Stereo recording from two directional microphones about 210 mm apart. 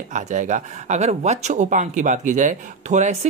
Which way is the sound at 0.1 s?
35° right (ahead or behind).